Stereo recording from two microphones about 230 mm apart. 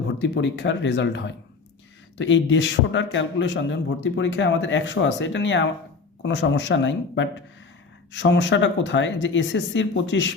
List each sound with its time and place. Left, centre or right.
0.2 s a man's voice: left